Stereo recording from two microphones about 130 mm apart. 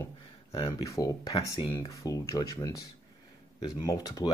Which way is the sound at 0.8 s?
25° left (ahead or behind).